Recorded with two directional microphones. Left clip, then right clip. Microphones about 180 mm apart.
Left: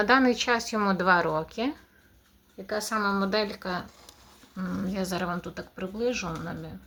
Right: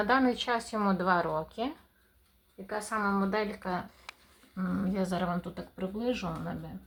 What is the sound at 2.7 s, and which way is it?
A woman's voice, 20° left (ahead or behind).